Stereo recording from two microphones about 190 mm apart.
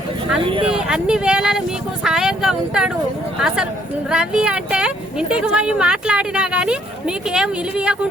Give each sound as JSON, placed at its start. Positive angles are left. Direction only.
{"t": 0.4, "sound": "speech", "side_deg": -25}
{"t": 0.7, "sound": "speech", "side_deg": -5}